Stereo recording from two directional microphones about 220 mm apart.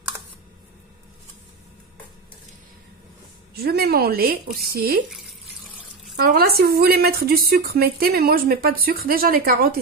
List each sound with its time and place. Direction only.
3.5 s speech: 45° right (ahead or behind)
6.1 s speech: 45° right (ahead or behind)